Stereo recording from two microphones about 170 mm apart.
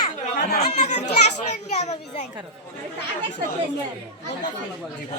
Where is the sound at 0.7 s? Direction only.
45° left (ahead or behind).